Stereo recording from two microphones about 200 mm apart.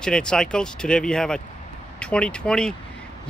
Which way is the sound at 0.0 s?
5° left (ahead or behind).